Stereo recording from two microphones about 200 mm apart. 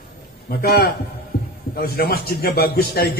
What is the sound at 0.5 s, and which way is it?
A man's voice, 50° left (ahead or behind).